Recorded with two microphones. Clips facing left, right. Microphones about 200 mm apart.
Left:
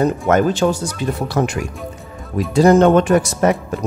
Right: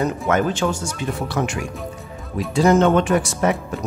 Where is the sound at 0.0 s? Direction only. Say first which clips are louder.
Left 5 dB; 35° left (ahead or behind).